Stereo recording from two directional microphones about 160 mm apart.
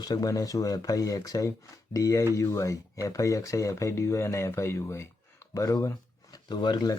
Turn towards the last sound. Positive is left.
turn(degrees=25)  # may be behind; listen again after turning